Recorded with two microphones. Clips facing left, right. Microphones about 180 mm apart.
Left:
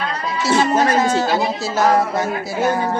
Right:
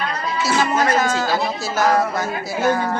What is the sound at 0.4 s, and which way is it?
Speech, 25° left (ahead or behind).